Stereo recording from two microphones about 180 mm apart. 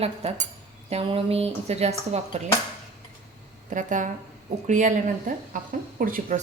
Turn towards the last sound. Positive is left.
turn(degrees=-50)  # may be behind; listen again after turning